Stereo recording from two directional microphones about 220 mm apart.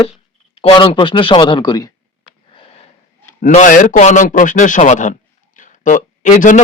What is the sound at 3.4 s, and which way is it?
A man's voice, 35° left (ahead or behind).